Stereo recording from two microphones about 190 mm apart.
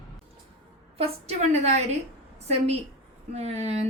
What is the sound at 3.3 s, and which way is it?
Speech, 35° right (ahead or behind).